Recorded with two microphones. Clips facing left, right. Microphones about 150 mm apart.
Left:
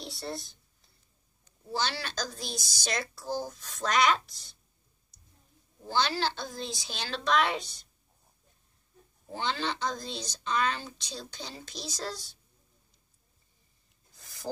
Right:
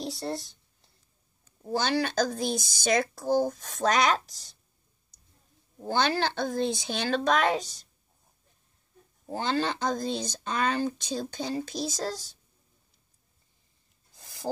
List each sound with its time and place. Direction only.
1.7 s speech: 50° right (ahead or behind)
5.8 s speech: 55° right (ahead or behind)
9.3 s speech: 40° right (ahead or behind)
14.2 s rub: 35° right (ahead or behind)